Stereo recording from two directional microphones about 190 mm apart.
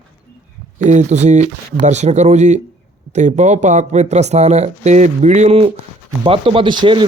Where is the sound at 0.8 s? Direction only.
40° right (ahead or behind).